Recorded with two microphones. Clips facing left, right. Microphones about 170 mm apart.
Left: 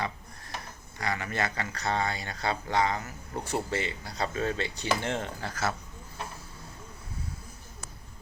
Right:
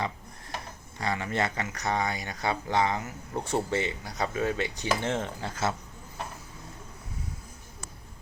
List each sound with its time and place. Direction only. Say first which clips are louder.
0.9 s speech: right 2 dB; 25° right (ahead or behind)